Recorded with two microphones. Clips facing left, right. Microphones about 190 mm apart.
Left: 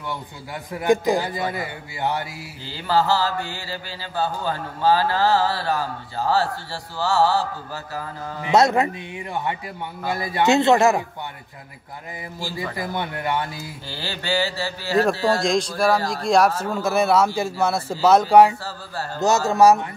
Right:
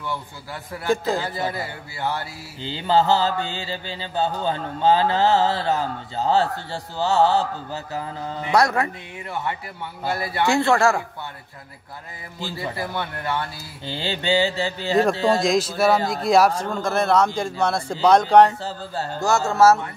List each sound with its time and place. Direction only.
0.7 s a man's voice: 15° left (ahead or behind)
2.6 s mantra: 20° right (ahead or behind)
8.4 s speech: 20° left (ahead or behind)
12.7 s a man's voice: 15° left (ahead or behind)
13.8 s mantra: 20° right (ahead or behind)
15.3 s a man's voice: centre (ahead or behind)
19.1 s a man's voice: 20° left (ahead or behind)